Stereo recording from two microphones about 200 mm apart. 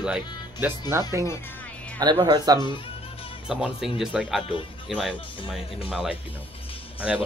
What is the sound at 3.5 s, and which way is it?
Speech, 5° right (ahead or behind).